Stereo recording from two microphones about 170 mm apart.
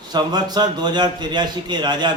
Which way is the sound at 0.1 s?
25° right (ahead or behind).